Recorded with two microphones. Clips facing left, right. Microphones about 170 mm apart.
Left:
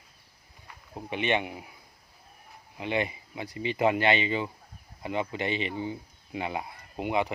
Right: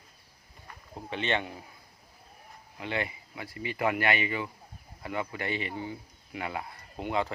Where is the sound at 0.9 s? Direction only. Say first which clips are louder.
Left 3 dB; 15° left (ahead or behind).